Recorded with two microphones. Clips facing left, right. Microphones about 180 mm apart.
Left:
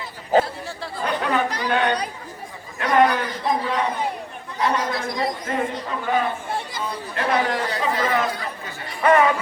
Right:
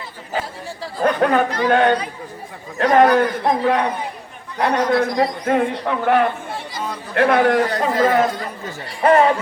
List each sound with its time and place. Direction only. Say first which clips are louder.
1.0 s chatter: right 7 dB; 55° right (ahead or behind)
1.6 s speech: right 8 dB; 50° right (ahead or behind)
2.7 s speech: right 6 dB; 35° right (ahead or behind)
3.0 s a man's voice: right 4 dB; 55° right (ahead or behind)
9.0 s speech: right 3 dB; 30° right (ahead or behind)